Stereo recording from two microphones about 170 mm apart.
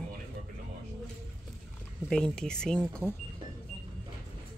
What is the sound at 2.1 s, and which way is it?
Speech, 5° left (ahead or behind).